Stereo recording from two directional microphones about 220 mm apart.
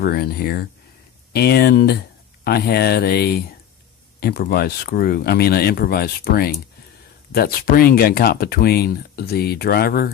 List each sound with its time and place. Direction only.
0.0 s speech: 45° left (ahead or behind)